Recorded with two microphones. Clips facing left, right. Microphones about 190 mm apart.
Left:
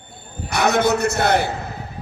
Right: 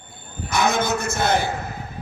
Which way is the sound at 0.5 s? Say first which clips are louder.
Left 4 dB; 65° left (ahead or behind).